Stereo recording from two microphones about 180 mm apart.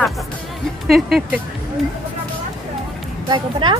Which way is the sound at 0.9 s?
5° right (ahead or behind).